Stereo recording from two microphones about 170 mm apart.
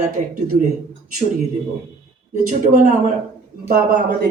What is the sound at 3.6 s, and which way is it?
Speech, 60° right (ahead or behind).